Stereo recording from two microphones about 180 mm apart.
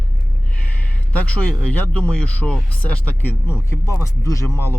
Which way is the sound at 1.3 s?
5° left (ahead or behind).